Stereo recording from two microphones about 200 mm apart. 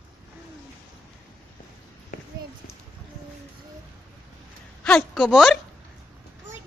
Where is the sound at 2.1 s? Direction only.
45° left (ahead or behind).